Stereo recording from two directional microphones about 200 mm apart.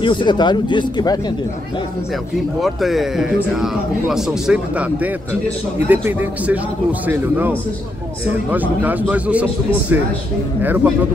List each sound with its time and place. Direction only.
0.0 s speech: 25° left (ahead or behind)
2.6 s speech: centre (ahead or behind)
10.6 s speech: 10° right (ahead or behind)